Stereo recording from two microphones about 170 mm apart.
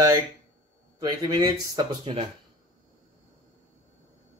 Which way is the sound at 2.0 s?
35° right (ahead or behind).